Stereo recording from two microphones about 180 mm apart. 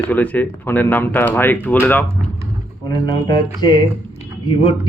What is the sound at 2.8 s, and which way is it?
Music, 20° left (ahead or behind).